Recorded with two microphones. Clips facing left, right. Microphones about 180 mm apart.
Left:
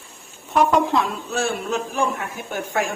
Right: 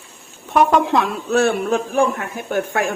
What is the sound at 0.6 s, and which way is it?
A woman's voice, 65° right (ahead or behind).